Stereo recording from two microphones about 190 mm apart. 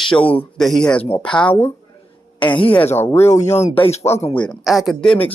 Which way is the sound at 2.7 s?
10° left (ahead or behind).